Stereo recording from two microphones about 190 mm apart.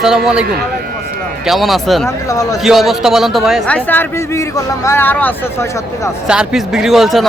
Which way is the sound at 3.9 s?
15° left (ahead or behind).